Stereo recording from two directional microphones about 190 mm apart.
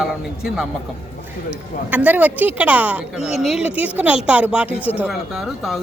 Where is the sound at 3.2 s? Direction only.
35° left (ahead or behind).